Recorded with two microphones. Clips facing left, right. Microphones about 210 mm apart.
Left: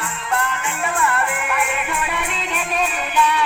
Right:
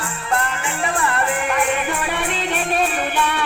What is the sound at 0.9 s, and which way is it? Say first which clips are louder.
Music: even; 35° right (ahead or behind).